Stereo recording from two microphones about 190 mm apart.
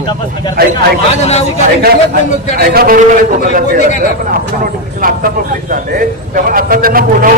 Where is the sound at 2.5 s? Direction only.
55° right (ahead or behind).